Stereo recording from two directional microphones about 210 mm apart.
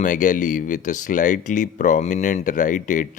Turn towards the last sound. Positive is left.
turn(degrees=35)  # may be behind; listen again after turning